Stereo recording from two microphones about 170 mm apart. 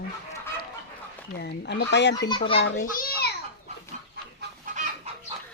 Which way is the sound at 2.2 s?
25° left (ahead or behind).